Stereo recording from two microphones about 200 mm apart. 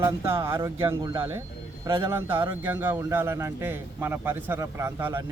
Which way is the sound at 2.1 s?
10° right (ahead or behind).